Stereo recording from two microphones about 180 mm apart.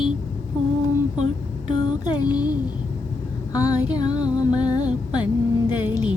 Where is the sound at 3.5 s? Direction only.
20° left (ahead or behind).